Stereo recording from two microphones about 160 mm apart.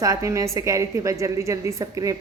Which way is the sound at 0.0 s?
20° right (ahead or behind).